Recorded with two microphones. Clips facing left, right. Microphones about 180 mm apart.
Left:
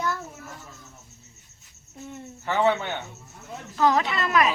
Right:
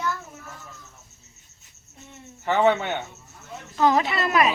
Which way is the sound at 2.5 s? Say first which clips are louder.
Right 3 dB; 20° right (ahead or behind).